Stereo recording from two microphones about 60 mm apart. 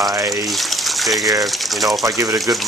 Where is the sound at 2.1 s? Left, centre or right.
Right.